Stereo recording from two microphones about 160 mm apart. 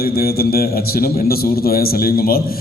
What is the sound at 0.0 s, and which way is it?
A man's voice, 75° left (ahead or behind).